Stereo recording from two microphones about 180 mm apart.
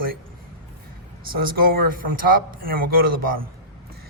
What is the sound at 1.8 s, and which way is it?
Speech, 50° right (ahead or behind).